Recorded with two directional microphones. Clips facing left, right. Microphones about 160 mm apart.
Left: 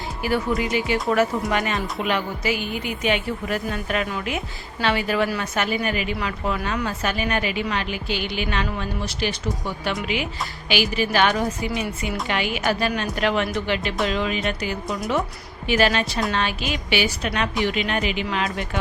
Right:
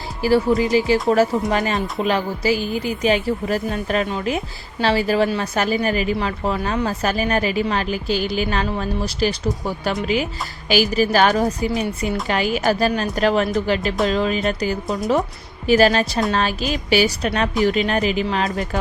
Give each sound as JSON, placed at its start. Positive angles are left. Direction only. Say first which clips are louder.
{"t": 0.2, "sound": "a woman's voice", "louder": "right 7 dB", "side_deg": -30}